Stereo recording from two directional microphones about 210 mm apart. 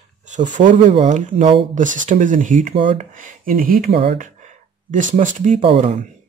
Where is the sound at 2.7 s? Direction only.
25° right (ahead or behind).